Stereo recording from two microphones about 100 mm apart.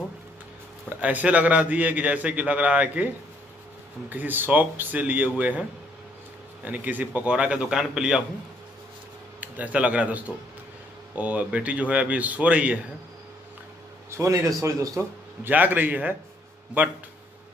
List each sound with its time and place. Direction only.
0.8 s a man's voice: 15° right (ahead or behind)
4.1 s a man's voice: 20° right (ahead or behind)
6.6 s a man's voice: 15° right (ahead or behind)
9.4 s a man's voice: 15° right (ahead or behind)
14.1 s speech: 30° right (ahead or behind)
15.4 s a man's voice: 20° right (ahead or behind)